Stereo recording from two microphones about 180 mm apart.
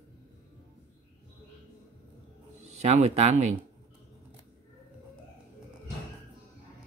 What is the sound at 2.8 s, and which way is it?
Speech, 40° right (ahead or behind).